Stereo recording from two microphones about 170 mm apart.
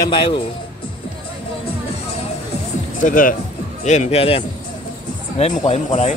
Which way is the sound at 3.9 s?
40° left (ahead or behind).